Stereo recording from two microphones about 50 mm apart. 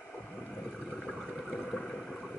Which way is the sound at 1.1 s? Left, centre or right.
Centre.